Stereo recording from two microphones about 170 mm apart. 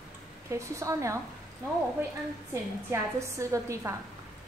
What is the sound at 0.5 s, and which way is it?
Speech, 20° right (ahead or behind).